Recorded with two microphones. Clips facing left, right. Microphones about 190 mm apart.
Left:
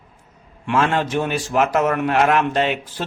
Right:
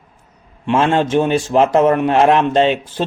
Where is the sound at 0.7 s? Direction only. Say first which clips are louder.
Right 5 dB; 25° right (ahead or behind).